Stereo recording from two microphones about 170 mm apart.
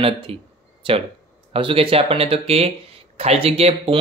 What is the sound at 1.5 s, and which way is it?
Speech, 30° right (ahead or behind).